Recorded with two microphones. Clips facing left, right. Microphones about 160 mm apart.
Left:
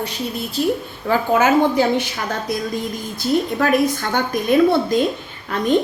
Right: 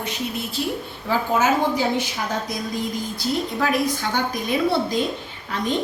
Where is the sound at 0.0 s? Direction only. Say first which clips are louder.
Left 3 dB; 35° left (ahead or behind).